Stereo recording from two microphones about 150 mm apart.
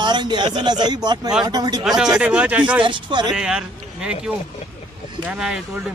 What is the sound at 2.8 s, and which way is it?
Speech, 30° right (ahead or behind).